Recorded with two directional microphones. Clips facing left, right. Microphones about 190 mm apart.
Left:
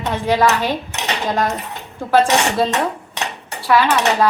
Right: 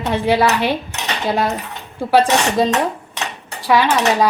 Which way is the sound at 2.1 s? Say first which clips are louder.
Right 1 dB; 10° right (ahead or behind).